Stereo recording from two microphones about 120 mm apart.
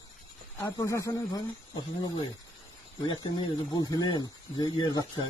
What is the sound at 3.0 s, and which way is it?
Speech, 35° left (ahead or behind).